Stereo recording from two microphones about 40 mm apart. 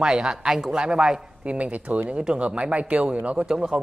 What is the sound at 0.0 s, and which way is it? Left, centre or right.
A man's voice, centre.